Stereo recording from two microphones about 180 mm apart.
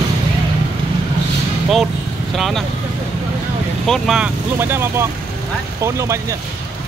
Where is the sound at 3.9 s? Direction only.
5° right (ahead or behind).